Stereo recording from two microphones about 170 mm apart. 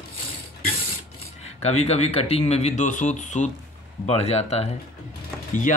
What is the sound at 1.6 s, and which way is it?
Speech, 40° left (ahead or behind).